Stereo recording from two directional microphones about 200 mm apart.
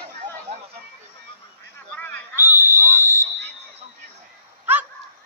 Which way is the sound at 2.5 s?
10° right (ahead or behind).